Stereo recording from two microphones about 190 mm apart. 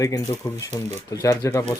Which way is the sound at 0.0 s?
15° left (ahead or behind).